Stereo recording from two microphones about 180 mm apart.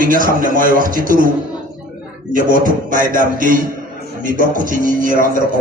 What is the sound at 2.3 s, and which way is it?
A man's voice, 50° right (ahead or behind).